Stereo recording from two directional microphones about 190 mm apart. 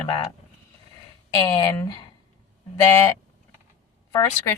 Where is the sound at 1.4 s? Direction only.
20° left (ahead or behind).